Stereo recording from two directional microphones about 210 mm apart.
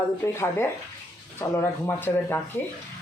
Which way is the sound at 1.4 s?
10° left (ahead or behind).